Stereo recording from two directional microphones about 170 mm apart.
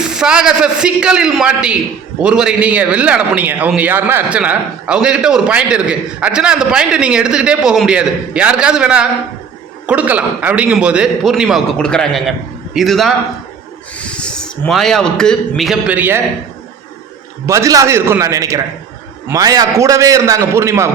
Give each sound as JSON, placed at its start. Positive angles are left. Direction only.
{"t": 0.0, "sound": "a man's voice", "side_deg": -5}
{"t": 17.4, "sound": "a man's voice", "side_deg": -15}